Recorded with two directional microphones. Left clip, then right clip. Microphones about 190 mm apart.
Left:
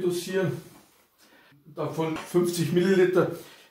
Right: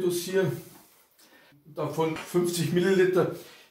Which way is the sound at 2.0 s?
5° left (ahead or behind).